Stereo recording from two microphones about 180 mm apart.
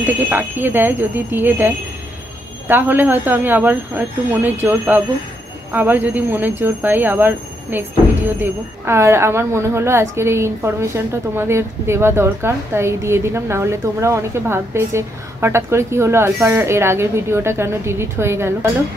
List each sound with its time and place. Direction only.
0.0 s a woman's voice: 10° right (ahead or behind)
2.7 s a woman's voice: 10° right (ahead or behind)